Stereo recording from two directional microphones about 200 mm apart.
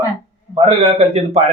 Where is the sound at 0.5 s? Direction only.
30° right (ahead or behind).